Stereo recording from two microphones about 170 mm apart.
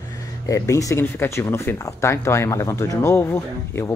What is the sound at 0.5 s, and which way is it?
Speech, 20° left (ahead or behind).